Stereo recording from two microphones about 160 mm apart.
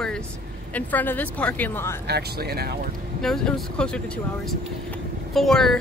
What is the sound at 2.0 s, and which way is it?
Speech, 90° right.